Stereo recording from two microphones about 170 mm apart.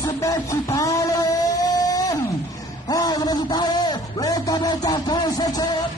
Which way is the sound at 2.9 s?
20° left (ahead or behind).